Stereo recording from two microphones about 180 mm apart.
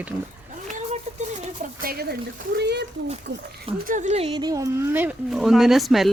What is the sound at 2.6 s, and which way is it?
Speech, 65° right (ahead or behind).